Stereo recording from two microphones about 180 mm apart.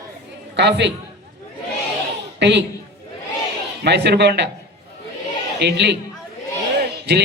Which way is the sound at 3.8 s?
70° right (ahead or behind).